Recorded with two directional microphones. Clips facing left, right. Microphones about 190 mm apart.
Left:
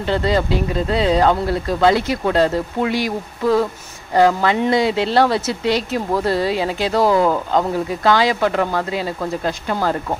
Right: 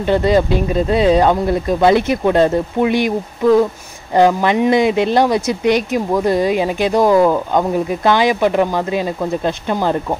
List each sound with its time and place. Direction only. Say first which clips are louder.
0.0 s speech: right 5 dB; 20° right (ahead or behind)
4.1 s speech: right 2 dB; 20° right (ahead or behind)